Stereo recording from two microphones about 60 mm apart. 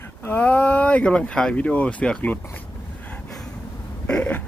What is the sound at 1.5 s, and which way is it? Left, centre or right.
Speech, left.